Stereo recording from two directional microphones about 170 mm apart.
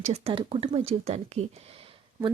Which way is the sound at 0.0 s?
40° right (ahead or behind).